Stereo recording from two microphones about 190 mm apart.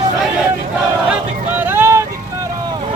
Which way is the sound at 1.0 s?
10° right (ahead or behind).